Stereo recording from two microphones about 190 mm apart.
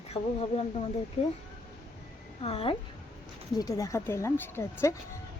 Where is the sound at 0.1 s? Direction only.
35° left (ahead or behind).